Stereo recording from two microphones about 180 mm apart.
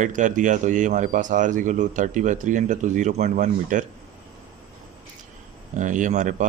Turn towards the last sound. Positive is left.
turn(degrees=-45)  # may be behind; listen again after turning